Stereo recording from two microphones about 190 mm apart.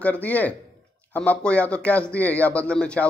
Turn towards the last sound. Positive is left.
turn(degrees=5)  # may be behind; listen again after turning